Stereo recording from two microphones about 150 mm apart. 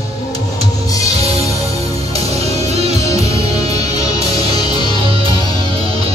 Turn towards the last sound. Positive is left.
turn(degrees=30)  # may be behind; listen again after turning